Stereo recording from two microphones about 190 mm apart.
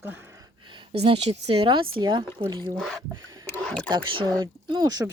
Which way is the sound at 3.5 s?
5° left (ahead or behind).